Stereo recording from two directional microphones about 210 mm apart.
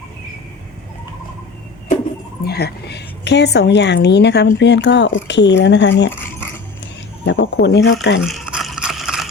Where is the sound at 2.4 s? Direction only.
50° left (ahead or behind).